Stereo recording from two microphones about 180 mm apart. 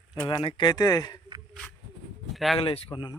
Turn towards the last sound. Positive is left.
turn(degrees=30)  # may be behind; listen again after turning